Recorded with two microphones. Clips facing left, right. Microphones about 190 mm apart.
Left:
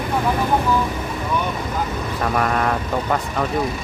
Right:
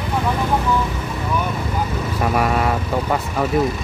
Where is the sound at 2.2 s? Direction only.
5° right (ahead or behind).